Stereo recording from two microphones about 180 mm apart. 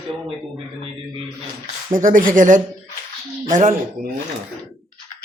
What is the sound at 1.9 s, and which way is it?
Speech, 50° right (ahead or behind).